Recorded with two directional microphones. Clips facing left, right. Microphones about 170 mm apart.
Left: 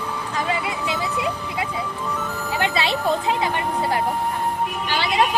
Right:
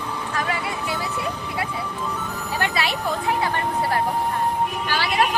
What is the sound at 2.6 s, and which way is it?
Speech, 20° left (ahead or behind).